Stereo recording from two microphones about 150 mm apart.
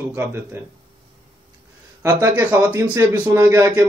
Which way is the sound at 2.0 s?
20° right (ahead or behind).